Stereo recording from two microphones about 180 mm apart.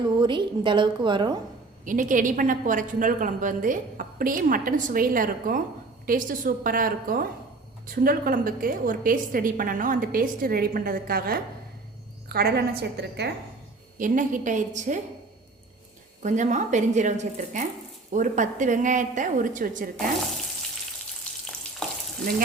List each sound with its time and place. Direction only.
0.2 s a woman's voice: 25° right (ahead or behind)
1.8 s a woman's voice: 45° right (ahead or behind); by 13.3 s 65° right (ahead or behind)
14.0 s a woman's voice: 45° right (ahead or behind)
16.2 s a woman's voice: 45° right (ahead or behind)